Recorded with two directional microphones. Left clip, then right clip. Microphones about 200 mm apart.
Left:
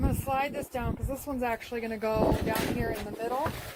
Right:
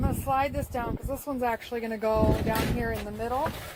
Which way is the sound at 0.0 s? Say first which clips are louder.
Right 3 dB; 25° right (ahead or behind).